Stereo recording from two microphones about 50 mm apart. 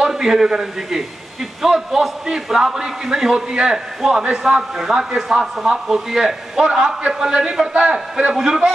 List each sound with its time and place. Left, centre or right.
0.0 s a man's voice: centre